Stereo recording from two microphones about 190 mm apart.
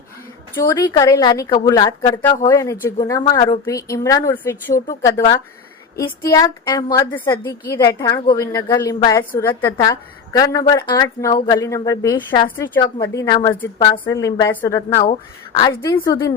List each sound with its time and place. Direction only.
0.5 s a woman's voice: 15° left (ahead or behind)
15.8 s a woman's voice: 15° left (ahead or behind)